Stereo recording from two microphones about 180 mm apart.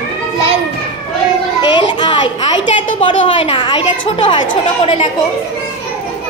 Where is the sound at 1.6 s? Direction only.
25° left (ahead or behind).